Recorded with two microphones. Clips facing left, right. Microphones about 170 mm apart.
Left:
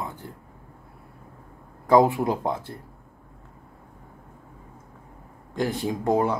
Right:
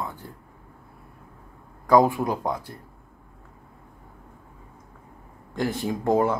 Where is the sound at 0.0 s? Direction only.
20° left (ahead or behind).